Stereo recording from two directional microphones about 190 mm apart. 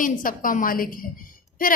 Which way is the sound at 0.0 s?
45° left (ahead or behind).